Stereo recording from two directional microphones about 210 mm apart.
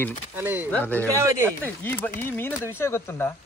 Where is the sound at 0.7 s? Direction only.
10° left (ahead or behind).